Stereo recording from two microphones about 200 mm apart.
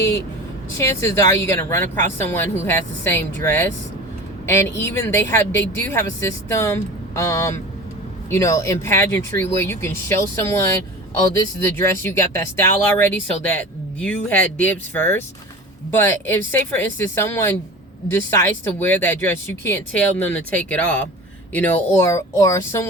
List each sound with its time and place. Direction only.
0.0 s a woman's voice: 15° left (ahead or behind)